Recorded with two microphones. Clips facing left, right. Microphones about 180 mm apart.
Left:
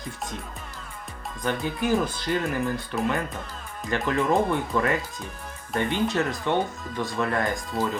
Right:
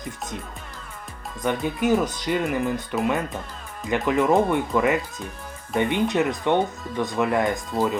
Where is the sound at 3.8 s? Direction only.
20° right (ahead or behind).